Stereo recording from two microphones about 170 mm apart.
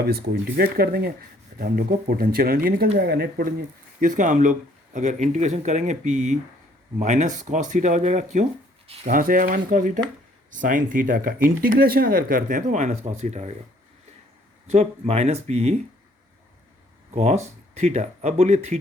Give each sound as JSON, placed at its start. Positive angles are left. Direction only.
{"t": 0.0, "sound": "speech", "side_deg": -65}
{"t": 4.0, "sound": "speech", "side_deg": -50}
{"t": 9.1, "sound": "speech", "side_deg": -55}
{"t": 14.7, "sound": "speech", "side_deg": -40}
{"t": 17.2, "sound": "speech", "side_deg": -40}